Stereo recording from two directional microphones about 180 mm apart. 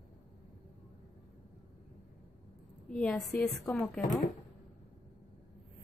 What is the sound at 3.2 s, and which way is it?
Speech, 20° left (ahead or behind).